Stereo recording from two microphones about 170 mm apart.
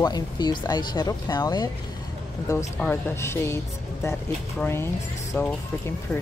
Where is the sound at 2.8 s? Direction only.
10° left (ahead or behind).